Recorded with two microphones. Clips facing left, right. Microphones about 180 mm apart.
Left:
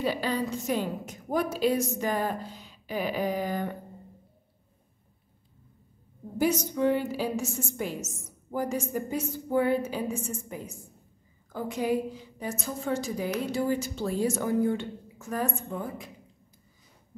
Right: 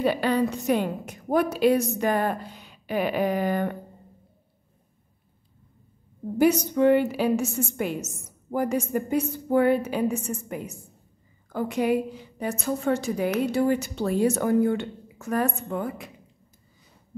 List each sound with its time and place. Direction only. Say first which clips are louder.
0.0 s a woman's voice: right 6 dB; 60° right (ahead or behind)
6.3 s a woman's voice: right 6 dB; 65° right (ahead or behind)